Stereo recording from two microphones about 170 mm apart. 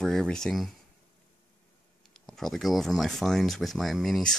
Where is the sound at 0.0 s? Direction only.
Centre (ahead or behind).